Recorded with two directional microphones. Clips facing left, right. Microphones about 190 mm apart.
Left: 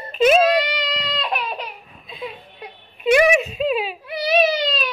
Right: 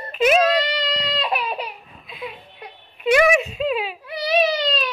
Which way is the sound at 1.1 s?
5° right (ahead or behind).